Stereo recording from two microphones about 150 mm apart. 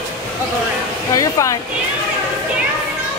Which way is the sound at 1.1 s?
20° left (ahead or behind).